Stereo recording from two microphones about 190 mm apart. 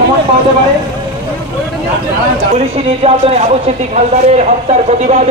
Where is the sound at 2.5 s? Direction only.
30° right (ahead or behind).